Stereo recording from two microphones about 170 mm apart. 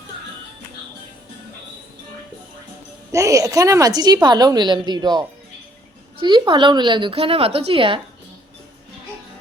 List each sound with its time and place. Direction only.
3.1 s a woman's voice: 20° right (ahead or behind)